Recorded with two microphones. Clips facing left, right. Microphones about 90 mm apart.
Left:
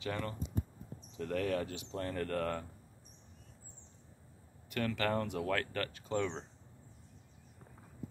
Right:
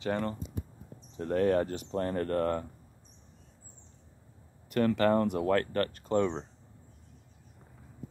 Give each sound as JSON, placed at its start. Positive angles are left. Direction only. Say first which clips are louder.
{"t": 0.0, "sound": "speech", "louder": "right 7 dB", "side_deg": -35}
{"t": 4.6, "sound": "speech", "louder": "right 9 dB", "side_deg": -40}